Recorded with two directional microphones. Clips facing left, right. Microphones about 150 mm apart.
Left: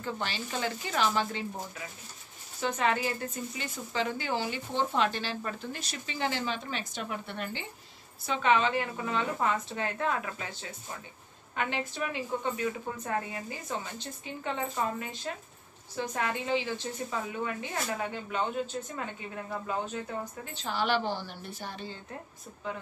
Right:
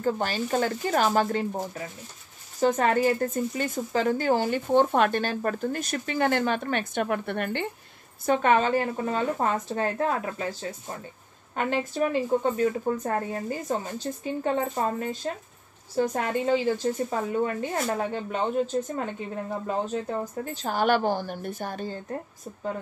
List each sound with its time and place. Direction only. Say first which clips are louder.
0.0 s a woman's voice: right 9 dB; 45° right (ahead or behind)